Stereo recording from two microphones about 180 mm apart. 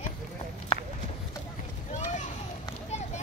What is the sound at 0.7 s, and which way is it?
Run, 35° left (ahead or behind).